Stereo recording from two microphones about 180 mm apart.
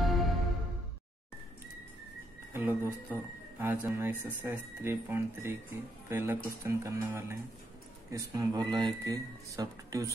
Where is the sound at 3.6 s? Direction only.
10° right (ahead or behind).